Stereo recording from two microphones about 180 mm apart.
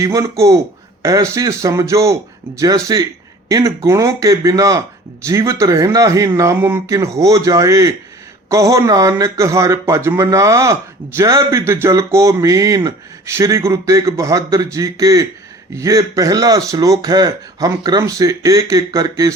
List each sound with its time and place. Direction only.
0.0 s a man's voice: 15° right (ahead or behind)